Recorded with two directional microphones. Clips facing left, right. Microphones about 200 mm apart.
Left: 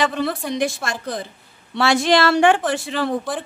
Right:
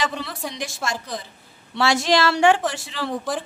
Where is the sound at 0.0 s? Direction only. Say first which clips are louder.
Left 6 dB; 55° left (ahead or behind).